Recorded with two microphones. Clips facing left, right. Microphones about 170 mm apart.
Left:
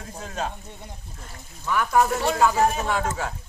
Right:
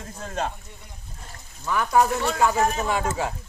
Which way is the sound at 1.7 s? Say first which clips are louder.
Even; centre (ahead or behind).